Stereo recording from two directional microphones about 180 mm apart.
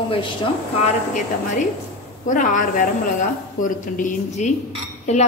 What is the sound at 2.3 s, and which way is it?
A woman's voice, 45° left (ahead or behind).